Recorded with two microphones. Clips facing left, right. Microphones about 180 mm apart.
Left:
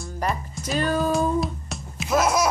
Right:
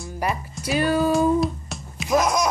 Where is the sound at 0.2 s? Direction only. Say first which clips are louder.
Right 1 dB; 10° right (ahead or behind).